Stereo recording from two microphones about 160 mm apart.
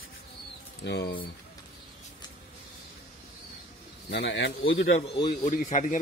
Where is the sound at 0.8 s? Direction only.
90° left.